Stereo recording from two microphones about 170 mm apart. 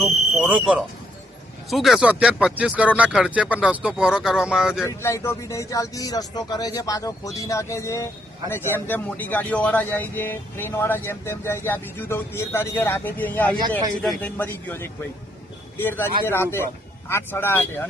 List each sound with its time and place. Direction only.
0.0 s speech: 10° right (ahead or behind)
4.9 s speech: 15° left (ahead or behind)
13.6 s a man's voice: 25° right (ahead or behind)
14.0 s speech: 5° left (ahead or behind)